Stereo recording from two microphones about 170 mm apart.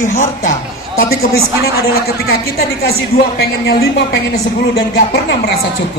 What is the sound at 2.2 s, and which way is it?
A woman's voice, 65° left (ahead or behind).